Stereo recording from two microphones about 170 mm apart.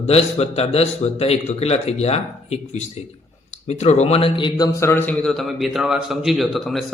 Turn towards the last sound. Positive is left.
turn(degrees=0)  # may be behind; listen again after turning